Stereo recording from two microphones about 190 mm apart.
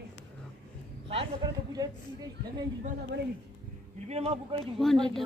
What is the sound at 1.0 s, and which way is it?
Speech, 25° right (ahead or behind).